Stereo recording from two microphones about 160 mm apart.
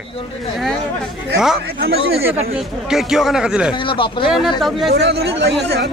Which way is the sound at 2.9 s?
Centre (ahead or behind).